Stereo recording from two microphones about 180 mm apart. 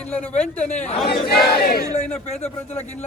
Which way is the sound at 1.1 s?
60° left (ahead or behind).